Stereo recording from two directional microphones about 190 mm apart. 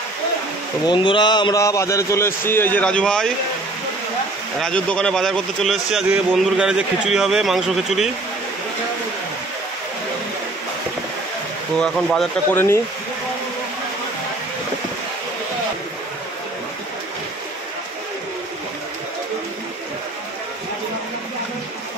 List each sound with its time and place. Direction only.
0.8 s a man's voice: 25° left (ahead or behind); by 3.3 s 5° left (ahead or behind)
4.6 s a man's voice: 5° left (ahead or behind)
11.8 s a man's voice: 5° left (ahead or behind)